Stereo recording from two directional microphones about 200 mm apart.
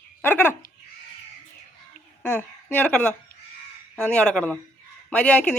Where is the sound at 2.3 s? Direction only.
10° left (ahead or behind).